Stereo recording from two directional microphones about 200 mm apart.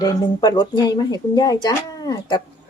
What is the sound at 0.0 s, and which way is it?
Speech, 20° left (ahead or behind).